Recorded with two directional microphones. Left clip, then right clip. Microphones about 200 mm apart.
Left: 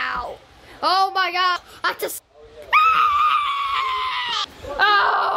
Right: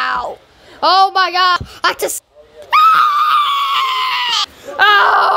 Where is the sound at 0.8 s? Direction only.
25° right (ahead or behind).